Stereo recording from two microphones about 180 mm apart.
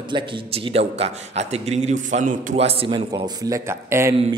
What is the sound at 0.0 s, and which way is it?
A man's voice, 25° right (ahead or behind).